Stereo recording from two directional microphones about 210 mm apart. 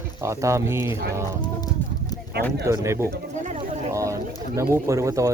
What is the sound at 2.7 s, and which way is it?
Speech, 15° right (ahead or behind).